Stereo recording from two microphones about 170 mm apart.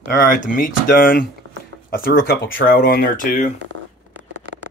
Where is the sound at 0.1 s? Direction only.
55° left (ahead or behind).